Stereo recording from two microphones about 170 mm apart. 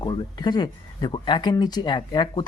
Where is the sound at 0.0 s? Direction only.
25° left (ahead or behind).